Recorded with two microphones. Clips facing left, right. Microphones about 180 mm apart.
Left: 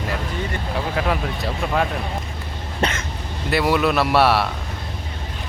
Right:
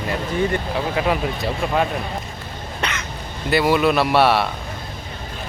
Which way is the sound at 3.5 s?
Centre (ahead or behind).